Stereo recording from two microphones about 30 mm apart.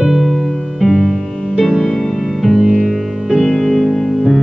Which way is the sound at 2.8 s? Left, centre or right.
Centre.